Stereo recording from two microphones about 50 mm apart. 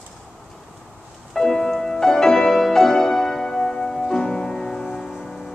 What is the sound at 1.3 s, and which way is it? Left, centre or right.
Music, centre.